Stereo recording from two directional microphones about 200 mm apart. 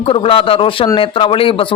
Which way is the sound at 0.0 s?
25° left (ahead or behind).